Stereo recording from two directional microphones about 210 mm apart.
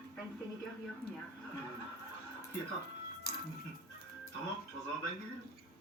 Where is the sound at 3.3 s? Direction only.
45° left (ahead or behind).